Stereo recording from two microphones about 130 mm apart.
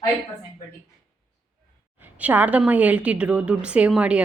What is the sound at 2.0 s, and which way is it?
A woman's voice, 10° right (ahead or behind).